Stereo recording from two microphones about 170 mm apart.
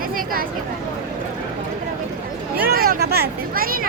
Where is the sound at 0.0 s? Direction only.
55° right (ahead or behind).